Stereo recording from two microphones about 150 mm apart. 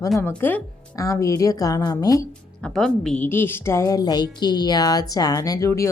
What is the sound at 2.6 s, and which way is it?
A woman's voice, 5° left (ahead or behind).